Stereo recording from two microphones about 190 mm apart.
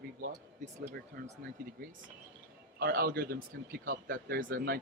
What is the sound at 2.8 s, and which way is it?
Speech, 55° right (ahead or behind).